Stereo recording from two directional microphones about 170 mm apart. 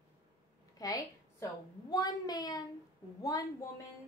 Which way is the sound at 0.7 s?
20° left (ahead or behind).